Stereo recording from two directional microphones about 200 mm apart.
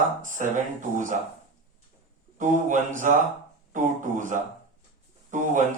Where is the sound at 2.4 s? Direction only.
40° right (ahead or behind).